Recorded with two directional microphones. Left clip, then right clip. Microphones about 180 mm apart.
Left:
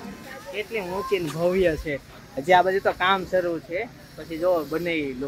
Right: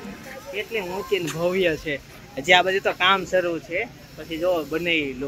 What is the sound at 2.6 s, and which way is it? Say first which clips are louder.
Speech: even; 20° left (ahead or behind).